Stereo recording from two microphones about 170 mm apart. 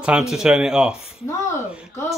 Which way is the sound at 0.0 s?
5° right (ahead or behind).